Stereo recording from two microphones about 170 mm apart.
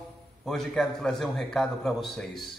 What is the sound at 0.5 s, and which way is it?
A man's voice, centre (ahead or behind).